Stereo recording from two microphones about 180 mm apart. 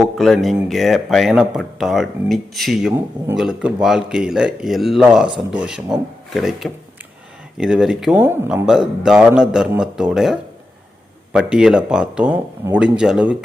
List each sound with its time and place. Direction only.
0.0 s speech: centre (ahead or behind)